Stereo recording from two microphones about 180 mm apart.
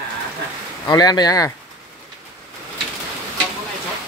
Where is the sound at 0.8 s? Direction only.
20° left (ahead or behind).